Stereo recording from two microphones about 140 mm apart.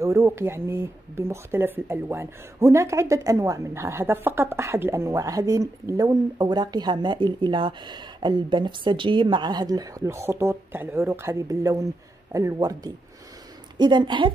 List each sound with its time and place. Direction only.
0.0 s a woman's voice: 20° right (ahead or behind)